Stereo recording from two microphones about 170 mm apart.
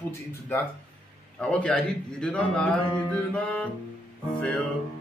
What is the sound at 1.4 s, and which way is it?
A man's voice, 5° left (ahead or behind).